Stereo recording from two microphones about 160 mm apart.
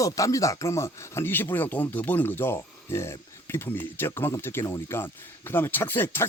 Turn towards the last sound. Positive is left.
turn(degrees=15)  # may be behind; listen again after turning